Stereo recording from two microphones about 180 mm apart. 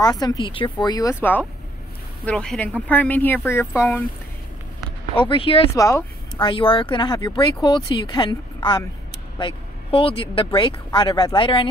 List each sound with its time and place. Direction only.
0.0 s speech: 20° left (ahead or behind)
5.2 s speech: 30° left (ahead or behind)
5.8 s speech: 15° left (ahead or behind)